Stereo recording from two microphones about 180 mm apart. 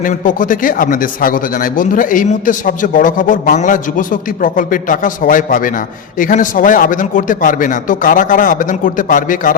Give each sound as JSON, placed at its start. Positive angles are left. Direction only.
{"t": 0.0, "sound": "a man's voice", "side_deg": 50}